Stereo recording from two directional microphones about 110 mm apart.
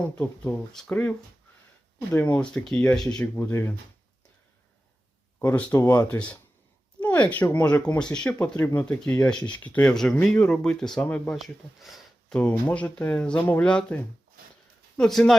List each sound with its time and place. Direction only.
0.2 s speech: 5° left (ahead or behind)
3.3 s speech: 20° left (ahead or behind)
5.4 s speech: 15° left (ahead or behind)
5.8 s speech: 25° left (ahead or behind)
7.0 s speech: 15° left (ahead or behind)
11.3 s speech: centre (ahead or behind)
12.4 s speech: 10° left (ahead or behind)